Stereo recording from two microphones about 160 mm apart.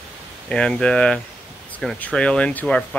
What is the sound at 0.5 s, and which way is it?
Speech, 5° left (ahead or behind).